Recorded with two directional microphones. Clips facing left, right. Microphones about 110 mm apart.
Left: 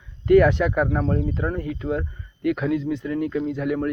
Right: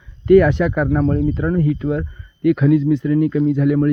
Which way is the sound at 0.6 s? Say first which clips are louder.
Right 5 dB; 10° left (ahead or behind).